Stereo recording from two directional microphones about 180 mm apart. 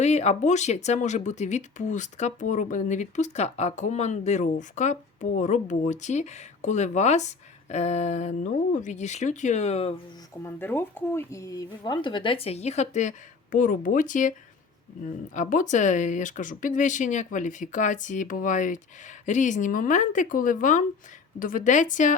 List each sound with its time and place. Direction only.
0.0 s speech: 40° left (ahead or behind)
10.4 s speech: 10° left (ahead or behind); by 14.3 s 45° left (ahead or behind)
15.4 s speech: 45° left (ahead or behind)